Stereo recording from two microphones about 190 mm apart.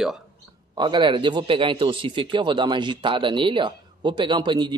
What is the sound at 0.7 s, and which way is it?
A man's voice, 25° right (ahead or behind).